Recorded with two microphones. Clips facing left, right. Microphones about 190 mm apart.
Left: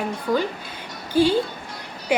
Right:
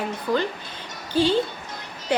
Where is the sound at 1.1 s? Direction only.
10° left (ahead or behind).